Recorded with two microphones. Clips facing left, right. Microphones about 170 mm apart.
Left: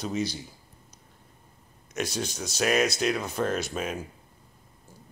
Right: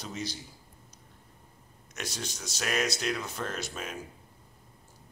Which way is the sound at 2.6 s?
15° left (ahead or behind).